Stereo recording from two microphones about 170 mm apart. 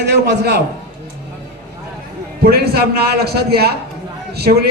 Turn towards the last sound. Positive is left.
turn(degrees=-70)  # may be behind; listen again after turning